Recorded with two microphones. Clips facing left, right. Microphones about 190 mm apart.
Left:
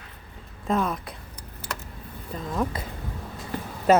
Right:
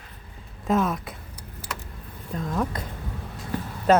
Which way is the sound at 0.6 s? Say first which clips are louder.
Right 2 dB; centre (ahead or behind).